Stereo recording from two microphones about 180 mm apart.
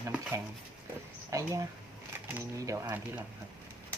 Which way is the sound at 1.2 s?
20° right (ahead or behind).